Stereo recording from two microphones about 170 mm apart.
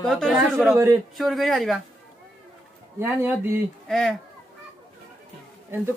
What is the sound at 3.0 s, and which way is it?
Speech, 10° right (ahead or behind).